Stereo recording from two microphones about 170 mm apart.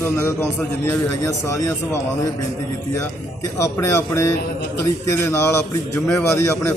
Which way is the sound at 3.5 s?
15° left (ahead or behind).